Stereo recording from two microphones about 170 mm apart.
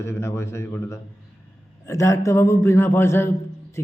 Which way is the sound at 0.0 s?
15° left (ahead or behind).